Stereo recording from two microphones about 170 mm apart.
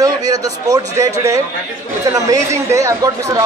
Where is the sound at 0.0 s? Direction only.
20° right (ahead or behind).